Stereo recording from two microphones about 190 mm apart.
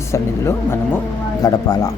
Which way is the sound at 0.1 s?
15° left (ahead or behind).